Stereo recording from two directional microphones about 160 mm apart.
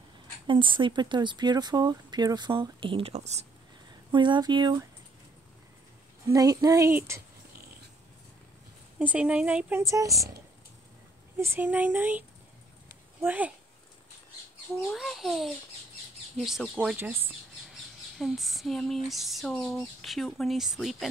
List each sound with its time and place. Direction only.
0.5 s speech: 30° right (ahead or behind)
4.1 s speech: 30° right (ahead or behind)
6.2 s speech: 20° right (ahead or behind)
8.9 s a woman's voice: 10° right (ahead or behind)
11.3 s a woman's voice: 15° right (ahead or behind)
14.7 s a sound: centre (ahead or behind)
18.1 s a sound: centre (ahead or behind)